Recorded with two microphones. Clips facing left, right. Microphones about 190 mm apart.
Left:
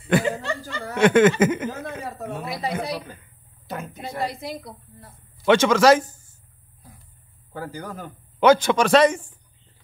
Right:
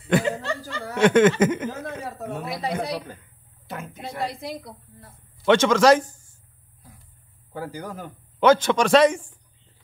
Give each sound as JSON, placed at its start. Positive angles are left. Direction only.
{"t": 0.1, "sound": "laughter", "side_deg": 5}
{"t": 0.4, "sound": "snicker", "side_deg": 15}
{"t": 0.8, "sound": "a man's voice", "side_deg": 0}
{"t": 3.6, "sound": "a sound", "side_deg": 40}
{"t": 4.2, "sound": "a man's voice", "side_deg": 0}
{"t": 7.5, "sound": "a man's voice", "side_deg": -15}
{"t": 8.4, "sound": "a man's voice", "side_deg": 10}